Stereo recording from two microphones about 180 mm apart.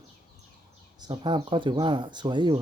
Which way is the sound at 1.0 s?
25° right (ahead or behind).